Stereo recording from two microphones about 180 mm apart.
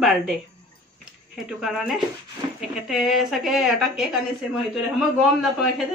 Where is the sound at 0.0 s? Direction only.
Centre (ahead or behind).